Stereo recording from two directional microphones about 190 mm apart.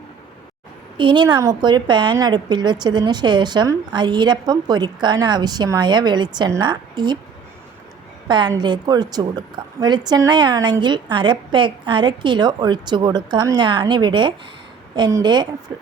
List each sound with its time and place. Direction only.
0.9 s a woman's voice: 25° right (ahead or behind)
8.3 s a woman's voice: 25° right (ahead or behind)